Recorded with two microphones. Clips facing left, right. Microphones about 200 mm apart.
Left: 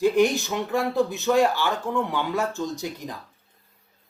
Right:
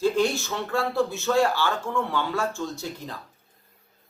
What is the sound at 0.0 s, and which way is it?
Speech, 15° left (ahead or behind).